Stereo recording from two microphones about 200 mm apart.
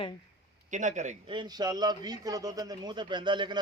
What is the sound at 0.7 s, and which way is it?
Speech, 40° right (ahead or behind).